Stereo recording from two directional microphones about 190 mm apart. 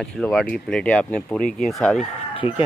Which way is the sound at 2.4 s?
10° right (ahead or behind).